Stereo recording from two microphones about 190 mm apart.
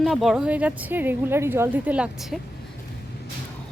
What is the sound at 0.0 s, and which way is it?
Speech, centre (ahead or behind).